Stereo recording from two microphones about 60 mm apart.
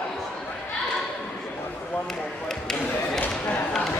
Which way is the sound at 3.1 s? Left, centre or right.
Left.